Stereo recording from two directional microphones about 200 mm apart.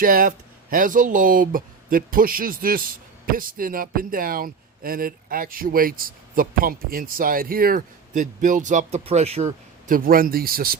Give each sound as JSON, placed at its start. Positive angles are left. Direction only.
{"t": 0.0, "sound": "speech", "side_deg": -45}
{"t": 9.9, "sound": "speech", "side_deg": -45}